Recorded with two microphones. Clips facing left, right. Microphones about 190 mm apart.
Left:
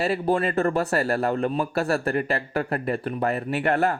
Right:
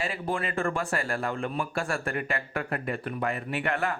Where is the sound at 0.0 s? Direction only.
40° left (ahead or behind).